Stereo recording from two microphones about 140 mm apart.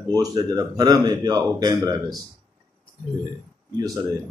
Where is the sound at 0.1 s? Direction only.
25° right (ahead or behind).